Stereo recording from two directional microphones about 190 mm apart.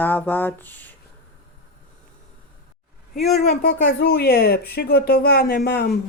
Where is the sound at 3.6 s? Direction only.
55° left (ahead or behind).